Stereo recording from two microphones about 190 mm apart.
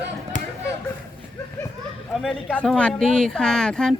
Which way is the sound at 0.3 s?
40° left (ahead or behind).